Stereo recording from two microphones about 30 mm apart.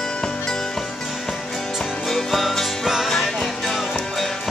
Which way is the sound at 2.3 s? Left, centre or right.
Centre.